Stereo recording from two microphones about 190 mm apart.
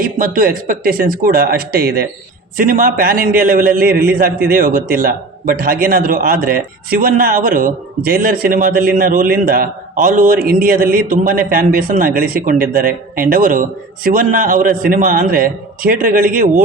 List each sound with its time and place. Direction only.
0.0 s a man's voice: 50° right (ahead or behind)